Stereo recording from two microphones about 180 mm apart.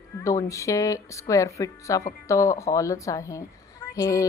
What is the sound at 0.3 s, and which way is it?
Speech, 15° left (ahead or behind).